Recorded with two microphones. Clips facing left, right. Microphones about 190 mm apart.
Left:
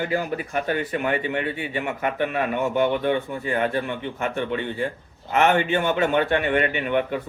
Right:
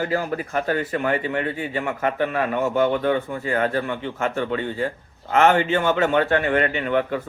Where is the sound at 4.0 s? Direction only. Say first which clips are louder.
Right 2 dB; 20° left (ahead or behind).